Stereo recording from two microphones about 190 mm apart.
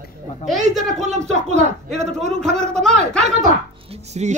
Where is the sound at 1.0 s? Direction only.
35° right (ahead or behind).